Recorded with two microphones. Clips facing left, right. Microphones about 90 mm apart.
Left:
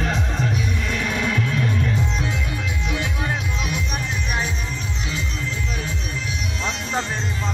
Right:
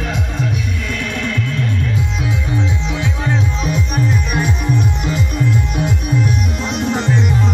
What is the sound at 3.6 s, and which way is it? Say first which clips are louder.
Music: right 8 dB; 40° right (ahead or behind).